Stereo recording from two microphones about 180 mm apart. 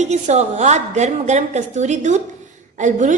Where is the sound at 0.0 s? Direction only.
40° right (ahead or behind).